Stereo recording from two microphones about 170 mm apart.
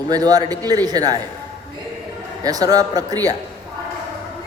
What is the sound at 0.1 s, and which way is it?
A man's voice, 20° right (ahead or behind).